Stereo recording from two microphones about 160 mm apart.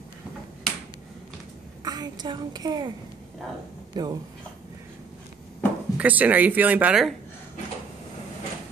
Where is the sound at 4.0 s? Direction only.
25° right (ahead or behind).